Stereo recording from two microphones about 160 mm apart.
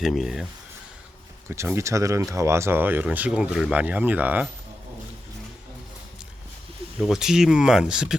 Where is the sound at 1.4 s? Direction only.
15° right (ahead or behind).